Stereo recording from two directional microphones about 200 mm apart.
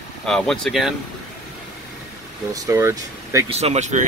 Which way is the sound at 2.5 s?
15° right (ahead or behind).